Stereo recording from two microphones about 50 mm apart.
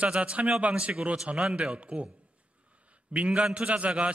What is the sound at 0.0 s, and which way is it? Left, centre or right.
A man's voice, right.